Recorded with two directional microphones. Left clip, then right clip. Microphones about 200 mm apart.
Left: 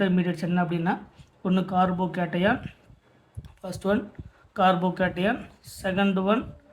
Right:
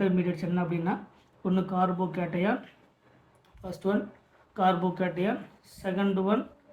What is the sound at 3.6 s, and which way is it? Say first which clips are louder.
A man's voice: left 3 dB; 40° left (ahead or behind).